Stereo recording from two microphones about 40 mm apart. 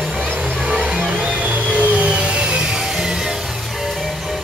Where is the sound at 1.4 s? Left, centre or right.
Right; by 3.3 s centre.